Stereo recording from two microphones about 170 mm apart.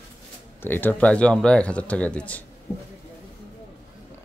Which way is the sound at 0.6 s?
10° left (ahead or behind).